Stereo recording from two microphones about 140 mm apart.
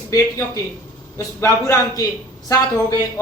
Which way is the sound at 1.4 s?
20° left (ahead or behind).